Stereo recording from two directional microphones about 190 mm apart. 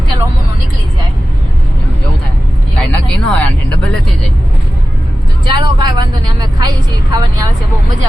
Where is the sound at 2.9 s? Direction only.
10° left (ahead or behind).